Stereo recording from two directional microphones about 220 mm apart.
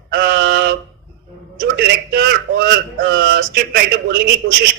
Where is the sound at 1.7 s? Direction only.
45° right (ahead or behind).